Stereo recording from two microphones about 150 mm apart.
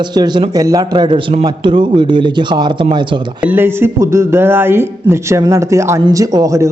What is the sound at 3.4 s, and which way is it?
A man's voice, 15° right (ahead or behind).